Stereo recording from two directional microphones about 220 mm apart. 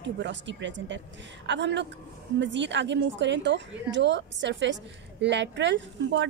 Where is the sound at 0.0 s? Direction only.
55° right (ahead or behind).